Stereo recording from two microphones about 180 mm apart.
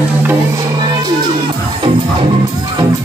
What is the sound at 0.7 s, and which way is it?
Music, 25° right (ahead or behind).